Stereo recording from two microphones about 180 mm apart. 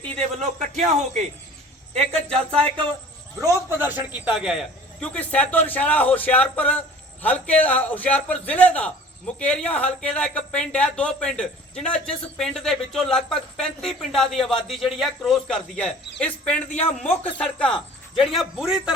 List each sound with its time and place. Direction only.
0.0 s a man's voice: 35° right (ahead or behind)
3.4 s a man's voice: 10° right (ahead or behind)